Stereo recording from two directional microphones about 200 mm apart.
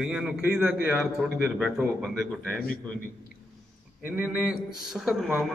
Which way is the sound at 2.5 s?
45° left (ahead or behind).